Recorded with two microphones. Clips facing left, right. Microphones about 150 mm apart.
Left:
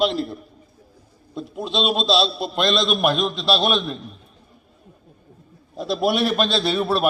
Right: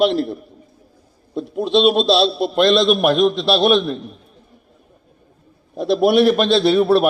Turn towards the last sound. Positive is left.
turn(degrees=-55)  # may be behind; listen again after turning